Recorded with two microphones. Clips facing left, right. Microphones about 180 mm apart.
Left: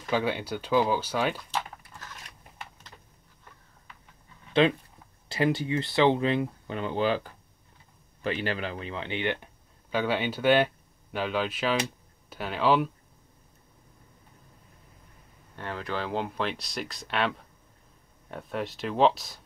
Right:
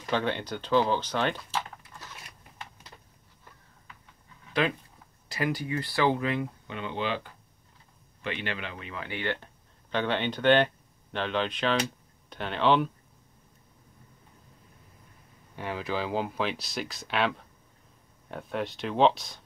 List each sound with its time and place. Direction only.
0.1 s speech: 5° left (ahead or behind)
4.6 s speech: 25° left (ahead or behind)
6.7 s speech: 40° left (ahead or behind)
8.2 s speech: 35° left (ahead or behind); by 12.9 s 5° left (ahead or behind)
15.5 s speech: 10° right (ahead or behind)